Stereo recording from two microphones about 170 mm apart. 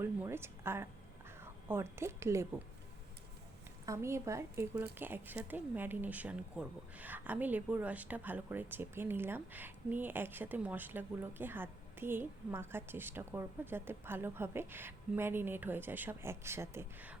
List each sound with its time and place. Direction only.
0.0 s a woman's voice: 15° right (ahead or behind)
3.8 s a woman's voice: 15° right (ahead or behind)